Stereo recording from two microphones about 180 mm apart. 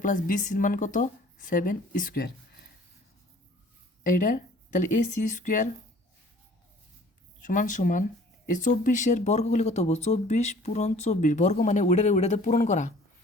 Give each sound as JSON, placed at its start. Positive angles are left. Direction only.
{"t": 0.0, "sound": "a woman's voice", "side_deg": 45}
{"t": 4.0, "sound": "a woman's voice", "side_deg": 45}
{"t": 7.4, "sound": "a woman's voice", "side_deg": 45}